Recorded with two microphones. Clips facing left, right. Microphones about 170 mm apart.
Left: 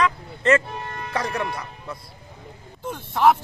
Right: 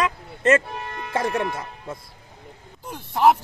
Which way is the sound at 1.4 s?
50° right (ahead or behind).